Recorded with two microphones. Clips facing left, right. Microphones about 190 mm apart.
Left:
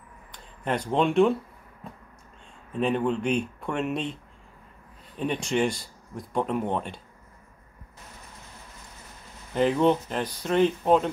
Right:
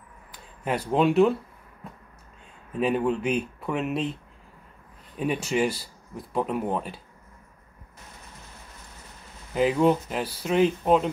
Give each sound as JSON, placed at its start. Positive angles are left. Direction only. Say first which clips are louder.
{"t": 0.3, "sound": "speech", "louder": "even", "side_deg": -5}
{"t": 2.7, "sound": "speech", "louder": "right 1 dB", "side_deg": -5}
{"t": 9.5, "sound": "speech", "louder": "even", "side_deg": -5}